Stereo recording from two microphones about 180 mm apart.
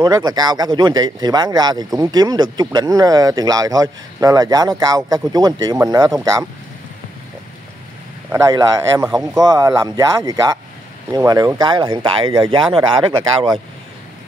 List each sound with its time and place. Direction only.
0.0 s speech: 20° right (ahead or behind)
8.3 s speech: 20° right (ahead or behind)